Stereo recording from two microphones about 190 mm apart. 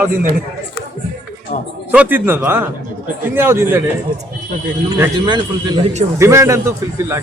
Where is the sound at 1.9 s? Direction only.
10° right (ahead or behind).